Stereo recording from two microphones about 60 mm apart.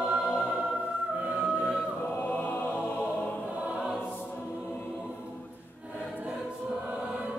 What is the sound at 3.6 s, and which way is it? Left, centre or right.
Choir, centre.